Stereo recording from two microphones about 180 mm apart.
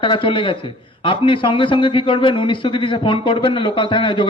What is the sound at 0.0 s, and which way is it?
A man's voice, 30° left (ahead or behind).